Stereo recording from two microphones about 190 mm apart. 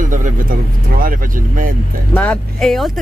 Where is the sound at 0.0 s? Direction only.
45° right (ahead or behind).